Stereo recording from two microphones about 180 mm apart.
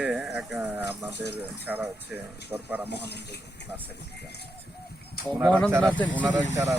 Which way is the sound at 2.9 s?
70° left (ahead or behind).